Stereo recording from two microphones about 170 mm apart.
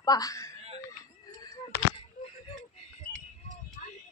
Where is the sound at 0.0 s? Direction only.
20° left (ahead or behind).